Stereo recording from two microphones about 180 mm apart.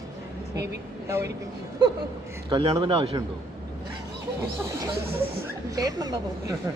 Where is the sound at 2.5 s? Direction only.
25° right (ahead or behind).